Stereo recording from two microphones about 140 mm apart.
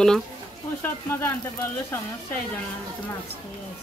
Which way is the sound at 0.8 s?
15° left (ahead or behind).